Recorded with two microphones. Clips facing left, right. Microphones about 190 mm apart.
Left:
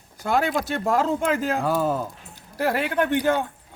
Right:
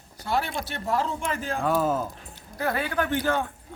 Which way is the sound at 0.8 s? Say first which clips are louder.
Left 5 dB; 90° left.